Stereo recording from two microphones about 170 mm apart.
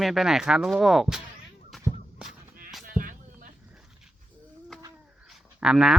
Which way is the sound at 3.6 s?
5° right (ahead or behind).